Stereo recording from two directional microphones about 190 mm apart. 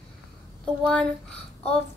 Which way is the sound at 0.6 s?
5° left (ahead or behind).